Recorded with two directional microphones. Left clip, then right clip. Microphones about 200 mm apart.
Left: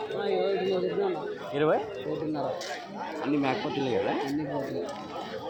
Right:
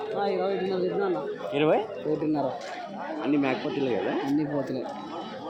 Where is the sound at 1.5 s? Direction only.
10° right (ahead or behind).